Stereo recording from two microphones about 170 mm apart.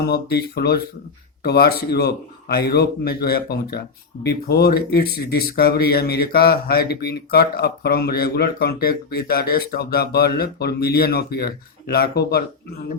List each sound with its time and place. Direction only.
0.0 s speech: 65° left (ahead or behind)